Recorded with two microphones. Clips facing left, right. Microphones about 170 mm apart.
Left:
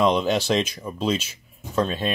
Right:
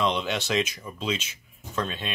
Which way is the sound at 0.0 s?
40° left (ahead or behind).